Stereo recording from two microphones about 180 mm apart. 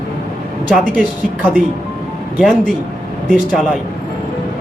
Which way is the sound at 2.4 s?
5° right (ahead or behind).